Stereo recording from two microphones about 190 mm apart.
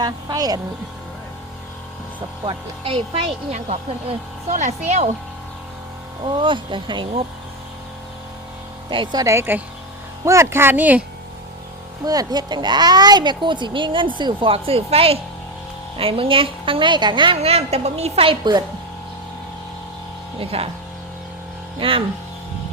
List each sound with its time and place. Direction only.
0.0 s speech: 20° right (ahead or behind)
2.4 s speech: 30° right (ahead or behind)
6.2 s speech: 25° right (ahead or behind)
8.9 s speech: 25° right (ahead or behind)
12.0 s speech: 20° right (ahead or behind)
20.4 s speech: 30° right (ahead or behind)
21.8 s speech: 30° right (ahead or behind)